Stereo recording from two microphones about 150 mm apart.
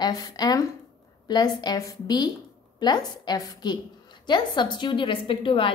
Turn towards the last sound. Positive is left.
turn(degrees=35)  # may be behind; listen again after turning